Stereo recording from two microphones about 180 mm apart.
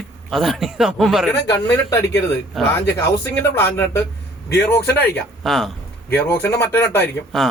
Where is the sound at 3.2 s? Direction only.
10° left (ahead or behind).